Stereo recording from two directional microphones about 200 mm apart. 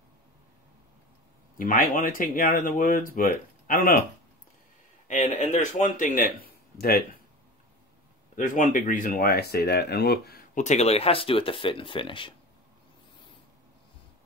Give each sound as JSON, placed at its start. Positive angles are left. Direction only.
{"t": 1.6, "sound": "speech", "side_deg": 45}
{"t": 5.0, "sound": "speech", "side_deg": 35}
{"t": 8.4, "sound": "speech", "side_deg": 40}